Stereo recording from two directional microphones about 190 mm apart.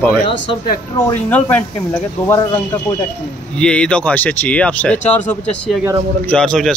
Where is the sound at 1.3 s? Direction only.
5° left (ahead or behind).